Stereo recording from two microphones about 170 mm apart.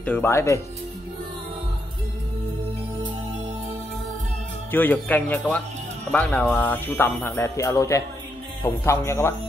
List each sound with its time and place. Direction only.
0.0 s speech: 10° left (ahead or behind)
4.6 s speech: 10° left (ahead or behind)